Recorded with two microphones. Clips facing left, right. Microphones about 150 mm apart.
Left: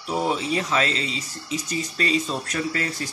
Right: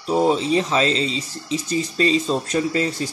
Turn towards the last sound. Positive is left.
turn(degrees=-25)  # may be behind; listen again after turning